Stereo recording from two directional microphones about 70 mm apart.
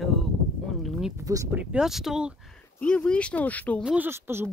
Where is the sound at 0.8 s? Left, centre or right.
Centre.